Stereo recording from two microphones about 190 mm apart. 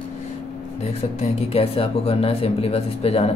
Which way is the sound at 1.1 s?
35° left (ahead or behind).